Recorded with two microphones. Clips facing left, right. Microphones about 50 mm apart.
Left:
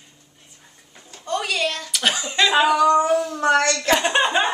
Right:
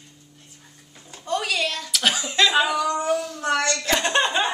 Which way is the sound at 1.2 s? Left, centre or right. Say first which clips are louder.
Left 1 dB; centre.